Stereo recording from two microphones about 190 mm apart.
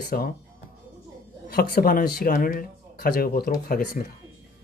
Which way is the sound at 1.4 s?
55° left (ahead or behind).